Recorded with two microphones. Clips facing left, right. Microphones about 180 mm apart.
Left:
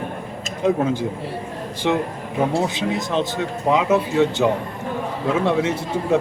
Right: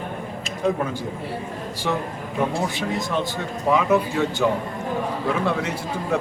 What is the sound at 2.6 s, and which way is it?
A man's voice, 20° left (ahead or behind).